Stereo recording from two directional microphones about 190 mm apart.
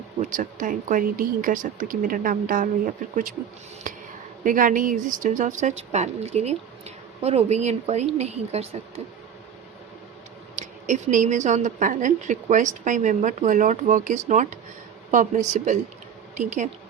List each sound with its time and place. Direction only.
0.2 s speech: 45° right (ahead or behind)
3.9 s a sound: 45° right (ahead or behind)
4.4 s speech: 45° right (ahead or behind)
10.5 s speech: 40° right (ahead or behind)